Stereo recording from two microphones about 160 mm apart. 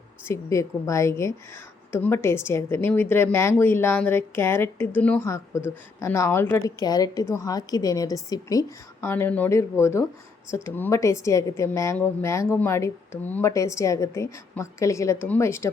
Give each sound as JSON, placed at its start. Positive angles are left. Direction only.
{"t": 0.3, "sound": "a woman's voice", "side_deg": 20}